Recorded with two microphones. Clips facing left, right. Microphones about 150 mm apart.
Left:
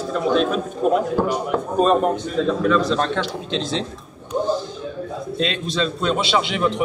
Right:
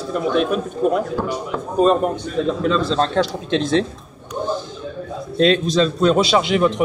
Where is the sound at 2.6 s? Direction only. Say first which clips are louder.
Right 1 dB; 25° right (ahead or behind).